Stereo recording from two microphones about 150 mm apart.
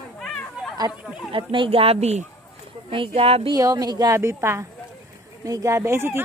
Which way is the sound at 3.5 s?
25° right (ahead or behind).